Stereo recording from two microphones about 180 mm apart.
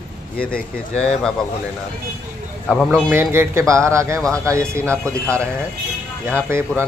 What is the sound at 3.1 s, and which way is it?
Speech, 15° right (ahead or behind).